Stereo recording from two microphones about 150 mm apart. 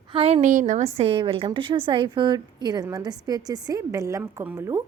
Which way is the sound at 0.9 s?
35° right (ahead or behind).